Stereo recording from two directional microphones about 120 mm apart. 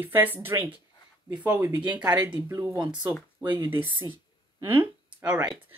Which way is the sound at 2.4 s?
25° right (ahead or behind).